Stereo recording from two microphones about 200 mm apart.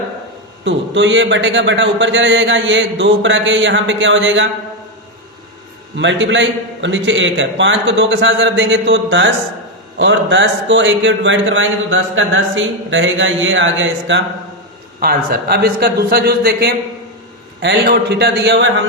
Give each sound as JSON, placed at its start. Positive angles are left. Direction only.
{"t": 0.6, "sound": "speech", "side_deg": -65}
{"t": 6.0, "sound": "speech", "side_deg": -65}
{"t": 15.0, "sound": "speech", "side_deg": -50}